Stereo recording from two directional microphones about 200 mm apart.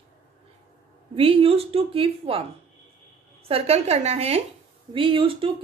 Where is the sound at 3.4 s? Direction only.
30° right (ahead or behind).